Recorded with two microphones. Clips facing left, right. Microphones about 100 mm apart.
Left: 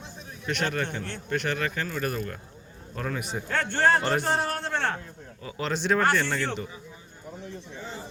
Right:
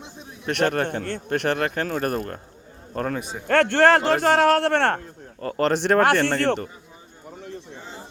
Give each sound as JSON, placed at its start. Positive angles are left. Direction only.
{"t": 0.0, "sound": "a man's voice", "side_deg": -60}
{"t": 3.4, "sound": "a man's voice", "side_deg": -75}